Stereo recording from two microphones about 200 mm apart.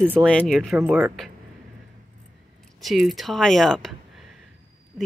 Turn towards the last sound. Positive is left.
turn(degrees=0)  # may be behind; listen again after turning